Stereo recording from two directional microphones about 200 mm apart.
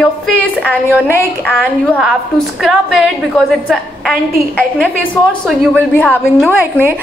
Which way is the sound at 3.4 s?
Centre (ahead or behind).